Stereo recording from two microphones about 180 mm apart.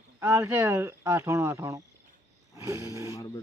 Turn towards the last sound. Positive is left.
turn(degrees=20)  # may be behind; listen again after turning